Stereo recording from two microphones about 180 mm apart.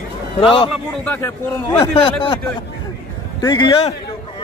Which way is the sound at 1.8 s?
30° left (ahead or behind).